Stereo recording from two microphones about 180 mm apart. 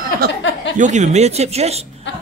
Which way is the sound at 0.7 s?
40° right (ahead or behind).